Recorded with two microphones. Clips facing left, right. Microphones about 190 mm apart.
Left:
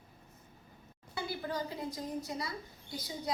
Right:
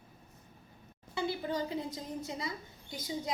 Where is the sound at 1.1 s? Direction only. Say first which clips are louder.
Right 3 dB; 20° right (ahead or behind).